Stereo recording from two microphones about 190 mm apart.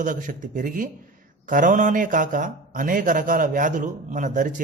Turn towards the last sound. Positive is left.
turn(degrees=-40)  # may be behind; listen again after turning